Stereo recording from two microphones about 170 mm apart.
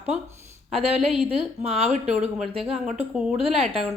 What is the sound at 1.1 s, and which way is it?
A woman's voice, 5° right (ahead or behind).